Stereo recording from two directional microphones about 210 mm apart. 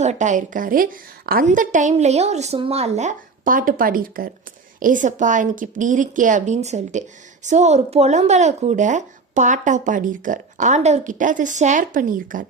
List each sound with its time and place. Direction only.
0.0 s speech: 35° right (ahead or behind)